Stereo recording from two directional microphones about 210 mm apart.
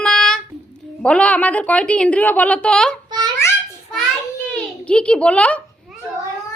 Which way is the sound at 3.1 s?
20° right (ahead or behind).